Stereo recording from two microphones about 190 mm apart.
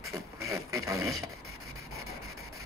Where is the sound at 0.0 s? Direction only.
15° right (ahead or behind).